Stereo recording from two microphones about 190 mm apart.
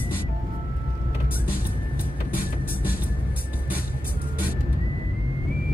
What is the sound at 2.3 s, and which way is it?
Music, 50° left (ahead or behind).